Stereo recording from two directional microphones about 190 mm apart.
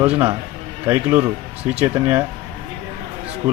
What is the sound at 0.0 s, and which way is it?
A man's voice, 10° right (ahead or behind).